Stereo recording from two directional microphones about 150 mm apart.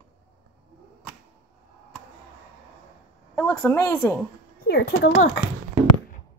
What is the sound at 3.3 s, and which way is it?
Speech, 15° left (ahead or behind).